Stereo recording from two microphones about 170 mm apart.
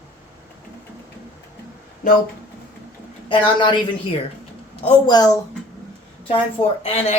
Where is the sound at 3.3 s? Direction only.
30° left (ahead or behind).